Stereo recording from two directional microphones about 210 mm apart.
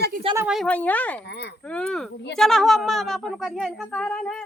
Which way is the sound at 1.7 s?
5° left (ahead or behind).